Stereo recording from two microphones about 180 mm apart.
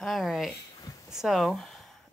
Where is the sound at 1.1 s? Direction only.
Centre (ahead or behind).